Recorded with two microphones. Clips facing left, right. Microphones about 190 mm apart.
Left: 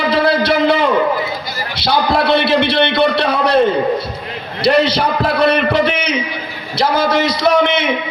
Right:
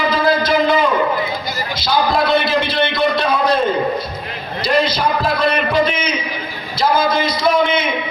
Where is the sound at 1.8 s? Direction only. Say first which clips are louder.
Left 2 dB; 70° left (ahead or behind).